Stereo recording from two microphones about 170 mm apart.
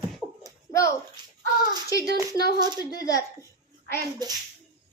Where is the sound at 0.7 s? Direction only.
20° left (ahead or behind).